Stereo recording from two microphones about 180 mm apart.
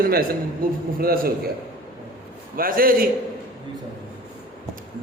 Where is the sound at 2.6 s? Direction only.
55° right (ahead or behind).